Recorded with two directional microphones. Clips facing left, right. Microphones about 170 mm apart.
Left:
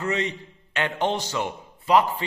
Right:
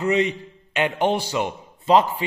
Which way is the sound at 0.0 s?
15° right (ahead or behind).